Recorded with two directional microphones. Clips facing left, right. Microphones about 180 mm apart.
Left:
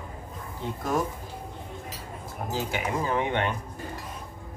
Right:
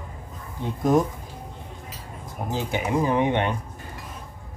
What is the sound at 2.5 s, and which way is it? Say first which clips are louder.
Speech: right 4 dB; 20° right (ahead or behind).